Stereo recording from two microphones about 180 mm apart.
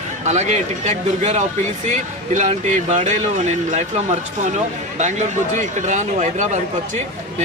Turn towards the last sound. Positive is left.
turn(degrees=-40)  # may be behind; listen again after turning